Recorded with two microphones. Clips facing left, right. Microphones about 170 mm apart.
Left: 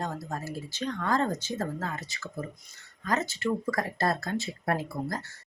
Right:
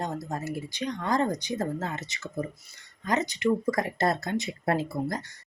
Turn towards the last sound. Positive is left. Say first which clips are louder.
# right 3 dB
turn(degrees=-25)  # may be behind; listen again after turning